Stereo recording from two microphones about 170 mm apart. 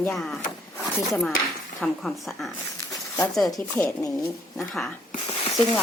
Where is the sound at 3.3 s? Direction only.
Centre (ahead or behind).